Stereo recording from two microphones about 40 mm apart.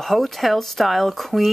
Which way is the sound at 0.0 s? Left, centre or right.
Centre.